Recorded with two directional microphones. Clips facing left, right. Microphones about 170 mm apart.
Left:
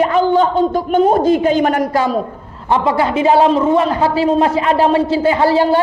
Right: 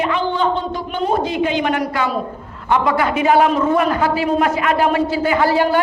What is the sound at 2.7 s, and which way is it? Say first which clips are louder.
A man's voice: left 2 dB; 30° left (ahead or behind).